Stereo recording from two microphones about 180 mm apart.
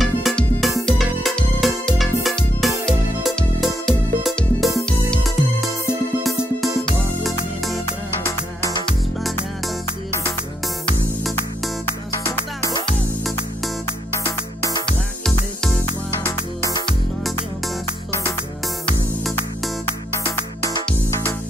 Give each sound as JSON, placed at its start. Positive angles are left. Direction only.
{"t": 0.0, "sound": "music", "side_deg": 0}
{"t": 8.3, "sound": "music", "side_deg": 15}
{"t": 8.8, "sound": "music", "side_deg": 5}
{"t": 12.3, "sound": "music", "side_deg": 20}
{"t": 14.2, "sound": "music", "side_deg": 15}
{"t": 14.9, "sound": "music", "side_deg": 5}
{"t": 20.2, "sound": "music", "side_deg": 15}